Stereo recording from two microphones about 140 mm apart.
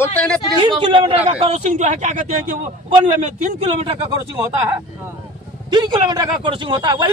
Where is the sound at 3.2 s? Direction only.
45° right (ahead or behind).